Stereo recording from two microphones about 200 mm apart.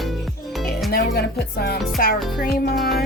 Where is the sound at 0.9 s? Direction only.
55° left (ahead or behind).